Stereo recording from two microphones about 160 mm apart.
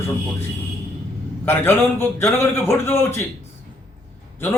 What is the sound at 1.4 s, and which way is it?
A man's voice, 15° left (ahead or behind).